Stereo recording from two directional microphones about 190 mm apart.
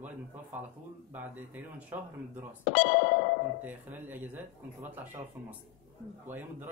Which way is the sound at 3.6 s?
10° right (ahead or behind).